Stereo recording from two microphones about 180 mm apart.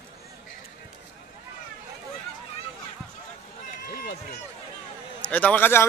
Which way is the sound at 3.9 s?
50° left (ahead or behind).